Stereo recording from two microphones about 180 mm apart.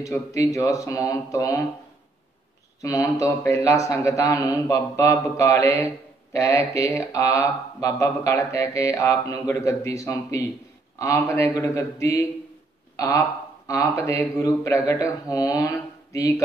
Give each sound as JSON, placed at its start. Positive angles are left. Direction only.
{"t": 0.0, "sound": "speech", "side_deg": 15}
{"t": 2.8, "sound": "speech", "side_deg": 20}